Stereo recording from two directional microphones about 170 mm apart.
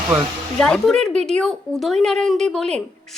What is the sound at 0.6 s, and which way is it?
A woman's voice, 5° left (ahead or behind).